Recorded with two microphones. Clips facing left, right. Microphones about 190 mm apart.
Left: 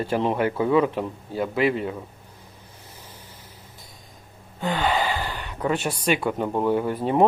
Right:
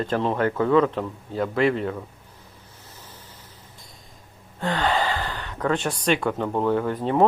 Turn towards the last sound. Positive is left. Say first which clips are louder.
# even
turn(degrees=15)  # may be behind; listen again after turning